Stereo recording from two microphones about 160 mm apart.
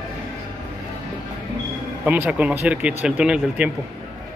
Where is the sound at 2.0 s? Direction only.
10° right (ahead or behind).